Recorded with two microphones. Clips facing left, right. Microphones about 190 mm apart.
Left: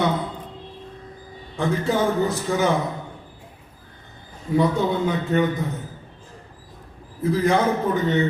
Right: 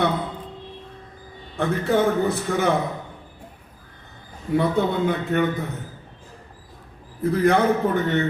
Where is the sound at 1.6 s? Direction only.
60° right (ahead or behind).